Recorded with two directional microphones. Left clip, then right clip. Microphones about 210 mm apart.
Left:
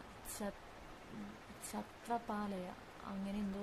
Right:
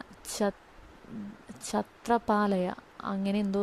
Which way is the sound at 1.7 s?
40° right (ahead or behind).